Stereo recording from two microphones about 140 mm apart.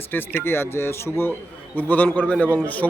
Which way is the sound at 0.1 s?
15° left (ahead or behind).